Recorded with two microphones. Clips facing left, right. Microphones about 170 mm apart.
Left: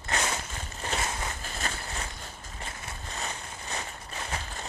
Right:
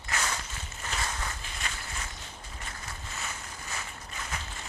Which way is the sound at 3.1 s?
30° left (ahead or behind).